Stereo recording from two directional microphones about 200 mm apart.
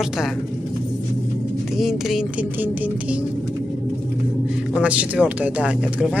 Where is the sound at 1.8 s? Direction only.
Centre (ahead or behind).